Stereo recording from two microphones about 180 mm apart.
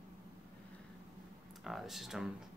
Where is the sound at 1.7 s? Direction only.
Centre (ahead or behind).